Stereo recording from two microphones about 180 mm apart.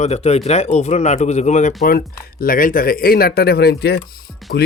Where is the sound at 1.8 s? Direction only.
55° left (ahead or behind).